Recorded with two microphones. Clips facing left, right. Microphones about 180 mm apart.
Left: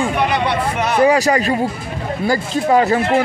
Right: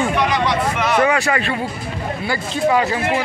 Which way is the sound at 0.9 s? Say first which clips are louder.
Left 5 dB; 35° left (ahead or behind).